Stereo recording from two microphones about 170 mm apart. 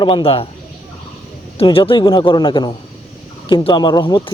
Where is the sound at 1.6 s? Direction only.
30° left (ahead or behind).